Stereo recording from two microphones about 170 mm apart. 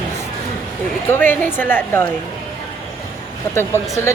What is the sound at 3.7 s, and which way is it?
Speech, 15° left (ahead or behind).